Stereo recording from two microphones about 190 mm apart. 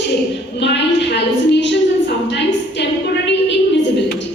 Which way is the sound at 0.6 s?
65° left (ahead or behind).